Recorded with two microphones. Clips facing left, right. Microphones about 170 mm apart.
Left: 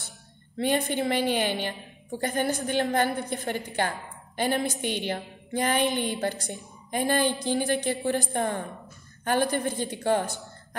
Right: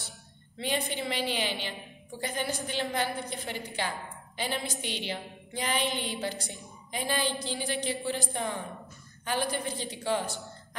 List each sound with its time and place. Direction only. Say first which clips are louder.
0.6 s a woman's voice: left 7 dB; 50° left (ahead or behind)